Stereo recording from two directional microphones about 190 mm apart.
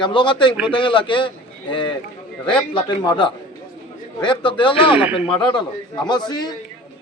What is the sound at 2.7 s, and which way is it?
A man's voice, 25° left (ahead or behind).